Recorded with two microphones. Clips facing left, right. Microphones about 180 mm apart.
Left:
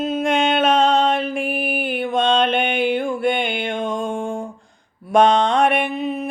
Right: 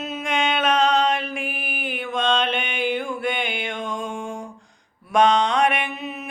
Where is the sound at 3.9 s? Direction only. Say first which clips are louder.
Left 6 dB; 55° left (ahead or behind).